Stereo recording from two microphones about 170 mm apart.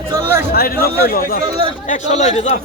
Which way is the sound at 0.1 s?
15° right (ahead or behind).